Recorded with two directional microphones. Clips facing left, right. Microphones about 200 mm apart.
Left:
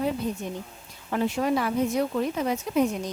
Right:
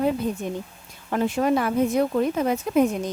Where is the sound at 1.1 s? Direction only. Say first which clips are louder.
Right 3 dB; 50° right (ahead or behind).